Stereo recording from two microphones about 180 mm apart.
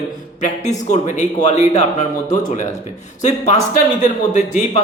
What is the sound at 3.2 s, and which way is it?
A man's voice, 40° left (ahead or behind).